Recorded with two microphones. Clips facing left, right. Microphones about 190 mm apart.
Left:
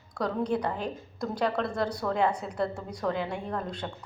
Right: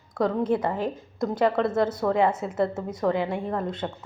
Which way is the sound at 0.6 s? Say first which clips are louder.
Right 4 dB; 5° right (ahead or behind).